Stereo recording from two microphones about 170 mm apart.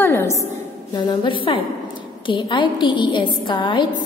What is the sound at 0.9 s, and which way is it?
A woman's voice, 30° left (ahead or behind).